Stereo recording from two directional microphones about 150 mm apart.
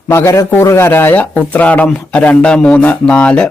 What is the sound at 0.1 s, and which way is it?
Speech, 15° left (ahead or behind).